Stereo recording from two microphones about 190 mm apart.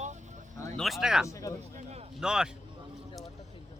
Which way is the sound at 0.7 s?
Centre (ahead or behind).